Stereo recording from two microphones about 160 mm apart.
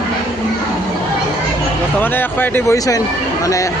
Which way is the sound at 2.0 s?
10° left (ahead or behind).